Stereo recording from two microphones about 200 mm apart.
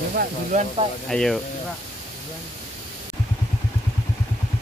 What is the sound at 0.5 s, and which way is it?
Speech, 35° right (ahead or behind).